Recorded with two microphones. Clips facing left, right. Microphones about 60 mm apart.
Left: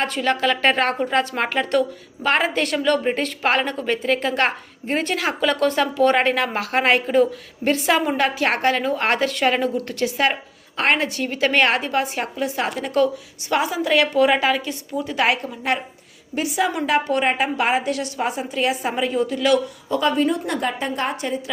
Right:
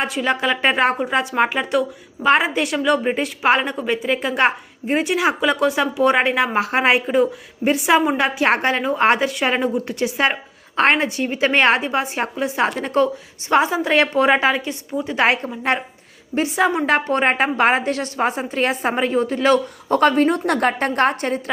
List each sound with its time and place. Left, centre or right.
0.0 s a woman's voice: centre; by 20.0 s right
20.0 s a woman's voice: right